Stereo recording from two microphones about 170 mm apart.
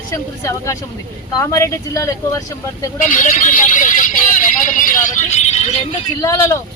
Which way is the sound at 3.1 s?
50° left (ahead or behind).